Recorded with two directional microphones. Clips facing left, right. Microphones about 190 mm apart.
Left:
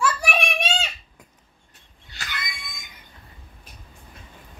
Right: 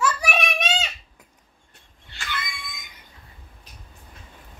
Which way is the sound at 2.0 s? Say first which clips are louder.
Right 3 dB; 40° left (ahead or behind).